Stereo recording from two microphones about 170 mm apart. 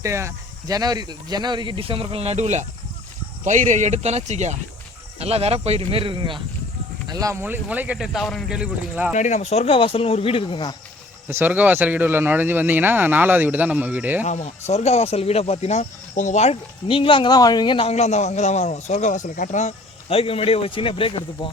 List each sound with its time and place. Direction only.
0.0 s speech: 15° right (ahead or behind)
9.1 s speech: 45° left (ahead or behind); by 10.8 s 30° left (ahead or behind)
11.3 s speech: 10° right (ahead or behind)
14.3 s speech: 45° left (ahead or behind)